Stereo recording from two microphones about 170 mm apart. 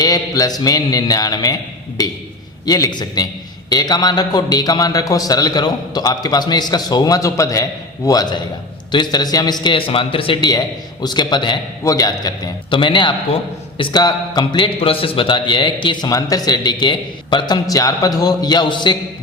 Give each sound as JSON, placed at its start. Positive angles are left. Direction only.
{"t": 0.0, "sound": "a man's voice", "side_deg": 25}